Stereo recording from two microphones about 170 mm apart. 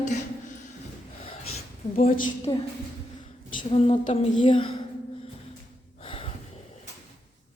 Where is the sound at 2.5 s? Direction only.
25° left (ahead or behind).